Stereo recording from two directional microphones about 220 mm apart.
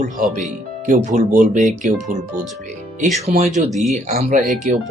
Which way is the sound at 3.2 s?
30° right (ahead or behind).